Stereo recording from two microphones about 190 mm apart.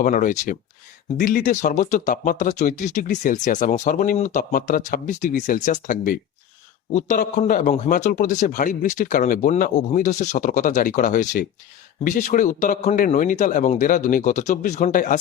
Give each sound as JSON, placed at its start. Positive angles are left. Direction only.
{"t": 0.0, "sound": "a man's voice", "side_deg": 40}